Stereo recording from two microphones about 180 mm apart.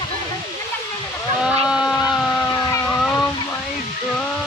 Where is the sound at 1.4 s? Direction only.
5° right (ahead or behind).